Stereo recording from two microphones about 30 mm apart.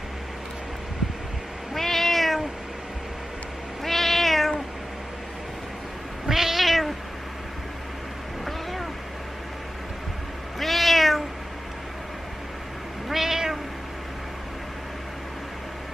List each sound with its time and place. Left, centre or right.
1.8 s cat: centre
3.8 s cat: centre
6.2 s cat: centre
10.6 s cat: centre
13.1 s cat: centre